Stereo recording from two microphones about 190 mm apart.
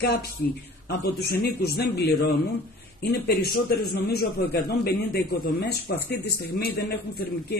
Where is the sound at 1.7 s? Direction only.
60° left (ahead or behind).